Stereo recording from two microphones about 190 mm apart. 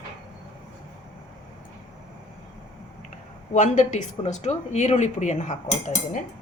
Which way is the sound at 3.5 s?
40° left (ahead or behind).